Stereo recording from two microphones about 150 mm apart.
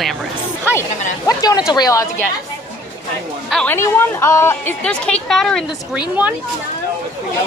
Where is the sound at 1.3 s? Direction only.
25° left (ahead or behind).